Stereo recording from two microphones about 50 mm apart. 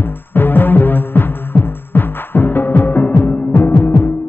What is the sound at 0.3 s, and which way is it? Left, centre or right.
Music, left.